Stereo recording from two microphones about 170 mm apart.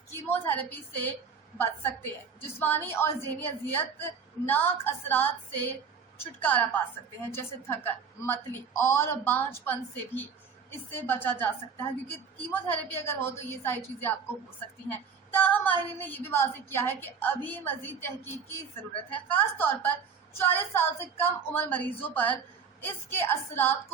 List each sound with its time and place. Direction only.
0.1 s a woman's voice: 10° left (ahead or behind)
15.3 s a woman's voice: 10° left (ahead or behind)